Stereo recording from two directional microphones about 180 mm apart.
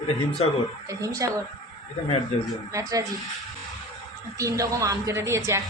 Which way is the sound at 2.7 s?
20° right (ahead or behind).